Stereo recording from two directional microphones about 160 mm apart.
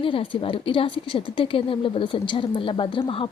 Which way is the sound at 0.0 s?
35° left (ahead or behind).